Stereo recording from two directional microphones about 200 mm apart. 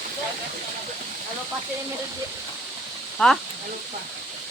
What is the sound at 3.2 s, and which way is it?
Speech, 5° left (ahead or behind).